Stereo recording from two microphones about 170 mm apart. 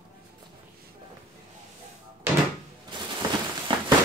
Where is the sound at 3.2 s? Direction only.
25° right (ahead or behind).